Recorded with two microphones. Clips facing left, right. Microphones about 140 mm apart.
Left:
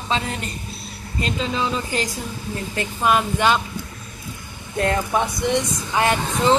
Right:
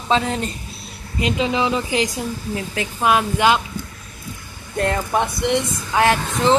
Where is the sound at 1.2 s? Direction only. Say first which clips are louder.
Right 4 dB; 15° right (ahead or behind).